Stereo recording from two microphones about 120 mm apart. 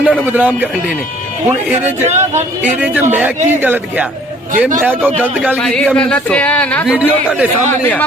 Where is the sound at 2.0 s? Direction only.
75° right (ahead or behind).